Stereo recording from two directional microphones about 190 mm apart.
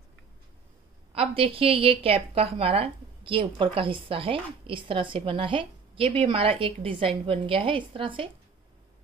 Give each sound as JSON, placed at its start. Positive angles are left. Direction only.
{"t": 1.1, "sound": "a woman's voice", "side_deg": -30}